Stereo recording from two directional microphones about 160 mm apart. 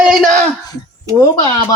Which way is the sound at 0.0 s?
Centre (ahead or behind).